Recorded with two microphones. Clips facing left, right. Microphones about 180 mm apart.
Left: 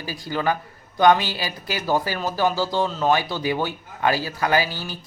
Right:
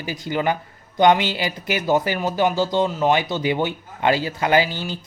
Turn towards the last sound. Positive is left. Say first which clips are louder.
# right 3 dB
turn(degrees=-20)  # may be behind; listen again after turning